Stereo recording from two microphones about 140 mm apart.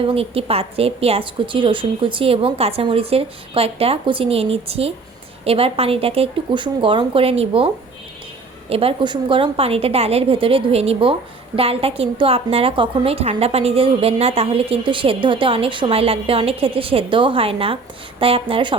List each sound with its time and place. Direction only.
0.0 s a woman's voice: 45° right (ahead or behind)
8.7 s a woman's voice: 40° right (ahead or behind)